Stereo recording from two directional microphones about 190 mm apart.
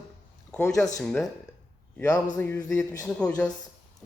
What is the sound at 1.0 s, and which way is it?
A man's voice, 5° left (ahead or behind).